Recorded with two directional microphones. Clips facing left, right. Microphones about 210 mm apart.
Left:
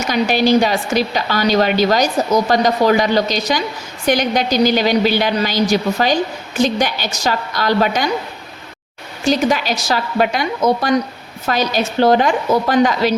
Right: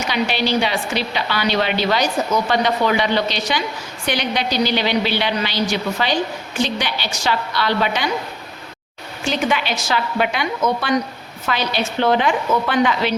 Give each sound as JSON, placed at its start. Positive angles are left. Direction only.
{"t": 0.1, "sound": "a woman's voice", "side_deg": 45}
{"t": 9.2, "sound": "a woman's voice", "side_deg": 40}